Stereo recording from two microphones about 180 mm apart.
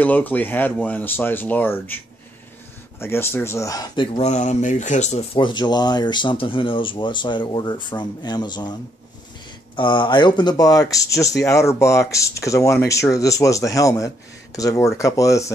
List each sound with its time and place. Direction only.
0.0 s speech: 10° left (ahead or behind)
3.0 s speech: 15° left (ahead or behind)
4.3 s speech: 40° left (ahead or behind); by 8.7 s 25° left (ahead or behind)
9.8 s speech: 25° left (ahead or behind)